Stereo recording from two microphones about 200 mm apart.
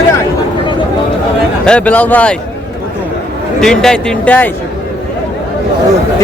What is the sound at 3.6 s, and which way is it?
Speech, 5° left (ahead or behind).